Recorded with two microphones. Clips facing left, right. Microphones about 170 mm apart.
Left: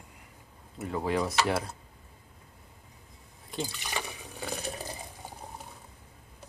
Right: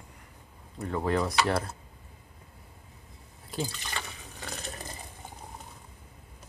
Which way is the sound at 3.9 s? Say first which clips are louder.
Left 3 dB; 10° left (ahead or behind).